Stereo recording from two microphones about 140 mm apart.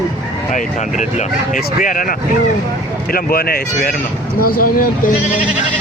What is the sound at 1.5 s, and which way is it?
Speech, 80° left.